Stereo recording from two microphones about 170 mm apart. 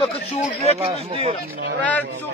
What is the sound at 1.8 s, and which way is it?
Speech, 10° left (ahead or behind).